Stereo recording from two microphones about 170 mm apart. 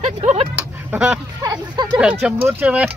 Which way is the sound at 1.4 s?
25° right (ahead or behind).